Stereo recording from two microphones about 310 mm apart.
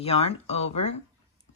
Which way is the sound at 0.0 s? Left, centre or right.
Centre.